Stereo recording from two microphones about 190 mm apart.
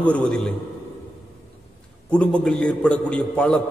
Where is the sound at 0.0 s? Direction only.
5° left (ahead or behind).